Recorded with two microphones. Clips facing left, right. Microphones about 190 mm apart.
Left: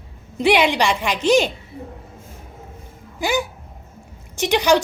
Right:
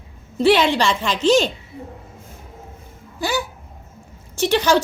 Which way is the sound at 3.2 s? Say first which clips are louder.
Left 2 dB; 15° left (ahead or behind).